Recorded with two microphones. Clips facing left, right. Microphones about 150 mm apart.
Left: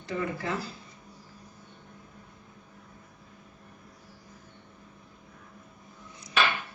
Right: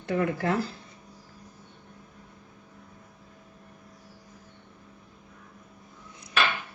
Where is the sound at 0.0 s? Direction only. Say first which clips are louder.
Right 5 dB; 60° right (ahead or behind).